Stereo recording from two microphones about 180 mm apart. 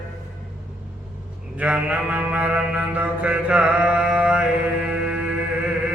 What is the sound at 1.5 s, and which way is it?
Mantra, 5° right (ahead or behind).